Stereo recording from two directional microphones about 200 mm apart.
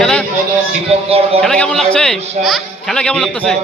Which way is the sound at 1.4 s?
5° left (ahead or behind).